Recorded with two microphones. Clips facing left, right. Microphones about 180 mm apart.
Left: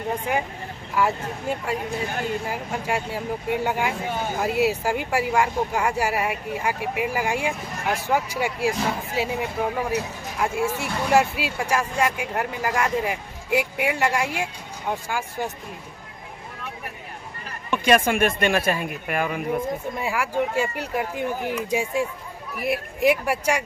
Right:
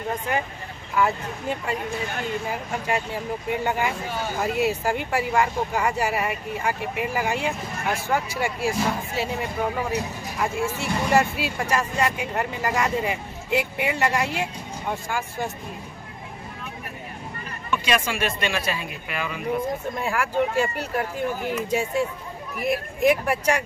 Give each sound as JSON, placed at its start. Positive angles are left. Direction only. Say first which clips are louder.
{"t": 0.9, "sound": "speech", "louder": "even", "side_deg": 5}
{"t": 17.8, "sound": "speech", "louder": "left 7 dB", "side_deg": 50}
{"t": 20.0, "sound": "speech", "louder": "right 1 dB", "side_deg": 10}